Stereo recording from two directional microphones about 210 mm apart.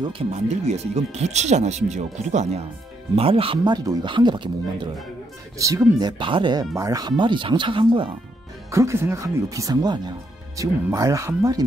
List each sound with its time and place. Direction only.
0.0 s speech: 30° right (ahead or behind)
8.7 s speech: 15° right (ahead or behind)